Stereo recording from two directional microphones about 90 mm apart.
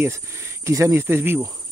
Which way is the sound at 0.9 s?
25° right (ahead or behind).